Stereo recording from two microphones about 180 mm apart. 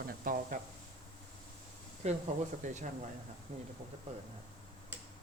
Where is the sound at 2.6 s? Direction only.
45° right (ahead or behind).